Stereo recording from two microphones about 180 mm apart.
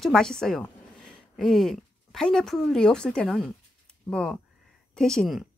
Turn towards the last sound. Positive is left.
turn(degrees=0)  # may be behind; listen again after turning